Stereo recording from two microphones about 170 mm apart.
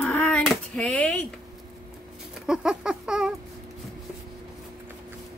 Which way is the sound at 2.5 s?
5° right (ahead or behind).